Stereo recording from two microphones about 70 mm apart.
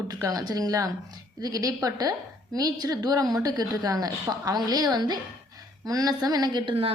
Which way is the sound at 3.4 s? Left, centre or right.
Right.